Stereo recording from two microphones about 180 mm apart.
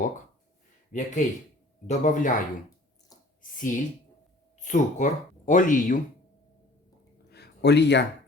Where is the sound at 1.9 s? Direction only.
45° left (ahead or behind).